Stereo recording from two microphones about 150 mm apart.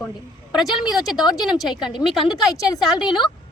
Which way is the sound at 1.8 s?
30° left (ahead or behind).